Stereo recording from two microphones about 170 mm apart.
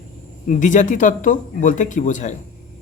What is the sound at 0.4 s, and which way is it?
Speech, 50° left (ahead or behind).